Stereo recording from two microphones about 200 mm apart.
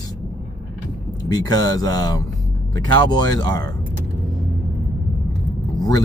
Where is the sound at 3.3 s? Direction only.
20° left (ahead or behind).